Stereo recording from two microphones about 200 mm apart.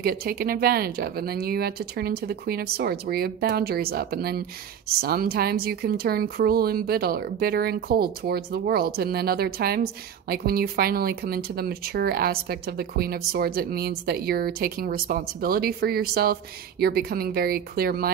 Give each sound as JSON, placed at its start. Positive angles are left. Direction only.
{"t": 0.0, "sound": "speech", "side_deg": -50}